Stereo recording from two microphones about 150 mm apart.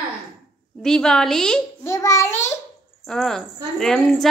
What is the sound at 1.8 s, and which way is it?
Speech, 20° left (ahead or behind).